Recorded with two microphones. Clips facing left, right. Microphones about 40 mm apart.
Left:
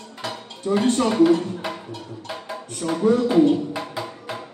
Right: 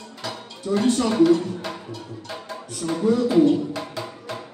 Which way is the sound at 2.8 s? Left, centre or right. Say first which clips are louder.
Left 1 dB; left.